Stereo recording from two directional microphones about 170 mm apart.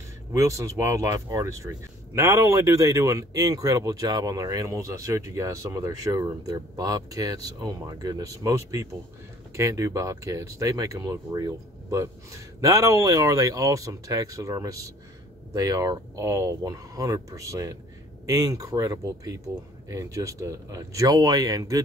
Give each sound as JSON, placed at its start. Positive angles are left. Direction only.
{"t": 0.3, "sound": "speech", "side_deg": -20}